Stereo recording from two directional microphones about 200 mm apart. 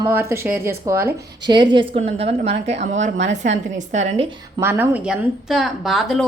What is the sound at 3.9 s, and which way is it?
Speech, 30° right (ahead or behind).